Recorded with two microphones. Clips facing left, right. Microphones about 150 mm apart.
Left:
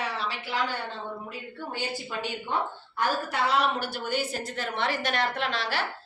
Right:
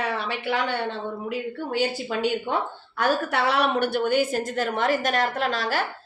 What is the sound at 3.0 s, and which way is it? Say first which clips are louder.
A woman's voice: right 4 dB; 70° right (ahead or behind).